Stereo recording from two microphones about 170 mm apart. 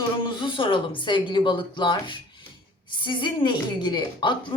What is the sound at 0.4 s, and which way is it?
A woman's voice, 30° left (ahead or behind).